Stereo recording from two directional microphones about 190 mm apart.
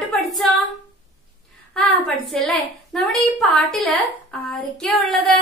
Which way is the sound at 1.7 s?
5° left (ahead or behind).